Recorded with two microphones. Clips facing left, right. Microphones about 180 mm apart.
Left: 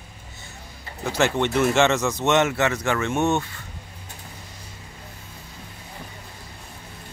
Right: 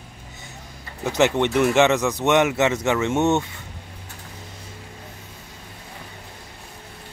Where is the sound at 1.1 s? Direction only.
20° right (ahead or behind).